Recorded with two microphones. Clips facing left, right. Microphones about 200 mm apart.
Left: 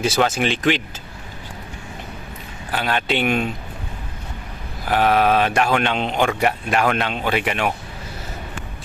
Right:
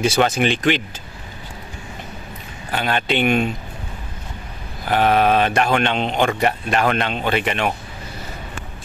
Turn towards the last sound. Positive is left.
turn(degrees=5)  # may be behind; listen again after turning